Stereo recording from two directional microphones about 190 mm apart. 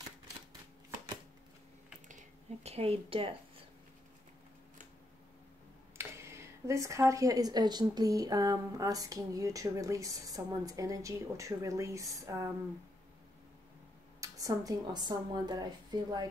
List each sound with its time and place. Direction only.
2.0 s speech: 35° right (ahead or behind)
5.9 s speech: 15° right (ahead or behind)
14.2 s a woman's voice: 20° right (ahead or behind)